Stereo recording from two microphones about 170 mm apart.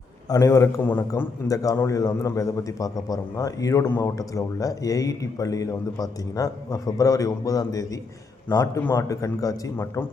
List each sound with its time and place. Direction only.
0.3 s a man's voice: 20° left (ahead or behind)